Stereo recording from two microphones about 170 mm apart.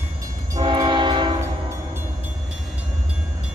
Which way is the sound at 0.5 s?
25° right (ahead or behind).